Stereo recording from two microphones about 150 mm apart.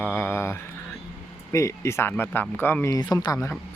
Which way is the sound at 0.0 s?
15° left (ahead or behind).